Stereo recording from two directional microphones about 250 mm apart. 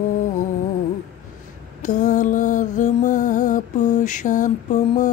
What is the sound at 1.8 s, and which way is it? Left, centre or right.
Music, left.